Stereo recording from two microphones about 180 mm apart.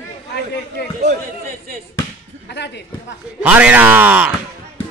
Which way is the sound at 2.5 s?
75° left (ahead or behind).